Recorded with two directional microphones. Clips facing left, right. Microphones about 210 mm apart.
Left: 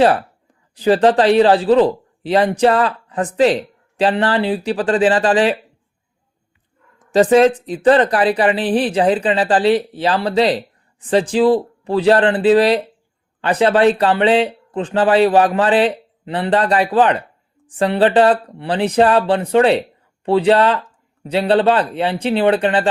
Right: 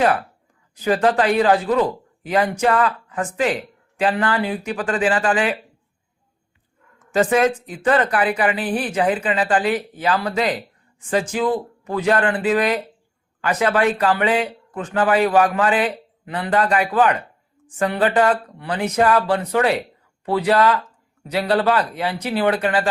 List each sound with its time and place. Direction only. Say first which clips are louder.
0.0 s speech: left 5 dB; 35° left (ahead or behind)
7.0 s speech: left 6 dB; 35° left (ahead or behind)